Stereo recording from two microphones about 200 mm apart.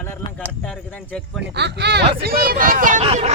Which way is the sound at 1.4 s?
60° right (ahead or behind).